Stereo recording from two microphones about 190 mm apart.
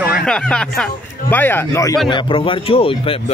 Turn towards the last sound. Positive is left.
turn(degrees=30)  # may be behind; listen again after turning